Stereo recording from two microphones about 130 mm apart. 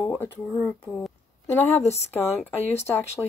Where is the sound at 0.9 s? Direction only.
Centre (ahead or behind).